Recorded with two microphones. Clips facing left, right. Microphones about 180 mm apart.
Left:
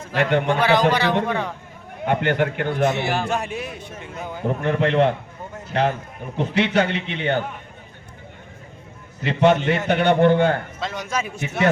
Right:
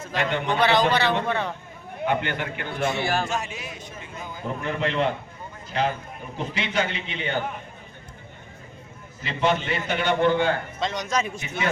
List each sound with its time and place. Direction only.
0.2 s a man's voice: 60° left (ahead or behind)
0.6 s a man's voice: 10° left (ahead or behind)
2.0 s a man's voice: 60° left (ahead or behind)
2.9 s a man's voice: 20° left (ahead or behind)
3.2 s a man's voice: 60° left (ahead or behind)
9.2 s a man's voice: 65° left (ahead or behind)
10.8 s a man's voice: 5° left (ahead or behind)
11.3 s a man's voice: 70° left (ahead or behind)